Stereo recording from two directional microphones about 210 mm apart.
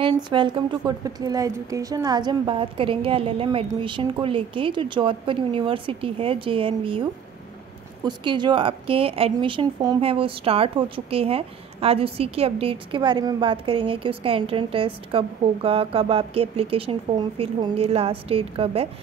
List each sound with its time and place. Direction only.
0.0 s speech: 25° right (ahead or behind)